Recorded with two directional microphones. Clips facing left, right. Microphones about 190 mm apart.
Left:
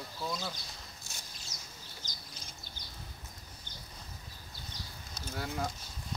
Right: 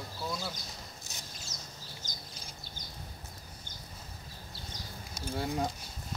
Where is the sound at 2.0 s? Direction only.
45° right (ahead or behind).